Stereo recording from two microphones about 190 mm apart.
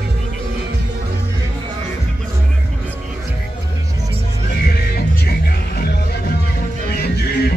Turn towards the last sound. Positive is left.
turn(degrees=55)  # may be behind; listen again after turning